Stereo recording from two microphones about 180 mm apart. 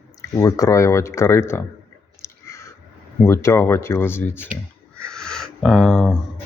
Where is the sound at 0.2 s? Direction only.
20° left (ahead or behind).